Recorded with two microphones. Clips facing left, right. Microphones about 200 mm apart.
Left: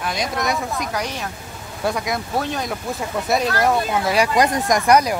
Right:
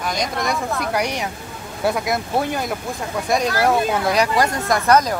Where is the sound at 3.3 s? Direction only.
5° left (ahead or behind).